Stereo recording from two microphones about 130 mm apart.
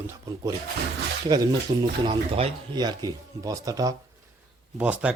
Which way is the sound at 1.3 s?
30° right (ahead or behind).